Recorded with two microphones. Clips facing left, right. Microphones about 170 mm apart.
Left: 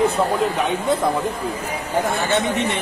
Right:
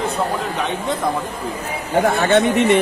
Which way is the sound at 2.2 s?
65° right (ahead or behind).